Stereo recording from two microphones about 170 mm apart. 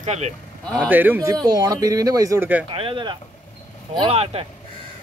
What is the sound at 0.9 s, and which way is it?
Speech, 10° right (ahead or behind).